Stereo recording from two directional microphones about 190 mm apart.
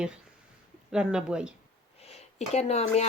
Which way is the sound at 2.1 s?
35° left (ahead or behind).